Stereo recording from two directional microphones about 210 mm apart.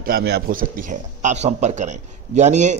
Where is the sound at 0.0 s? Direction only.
50° right (ahead or behind).